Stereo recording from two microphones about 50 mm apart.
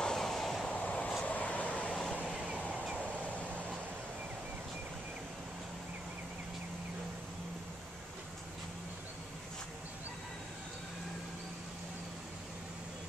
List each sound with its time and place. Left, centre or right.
0.0 s vehicle: centre
0.7 s vehicle: left
2.7 s vehicle: right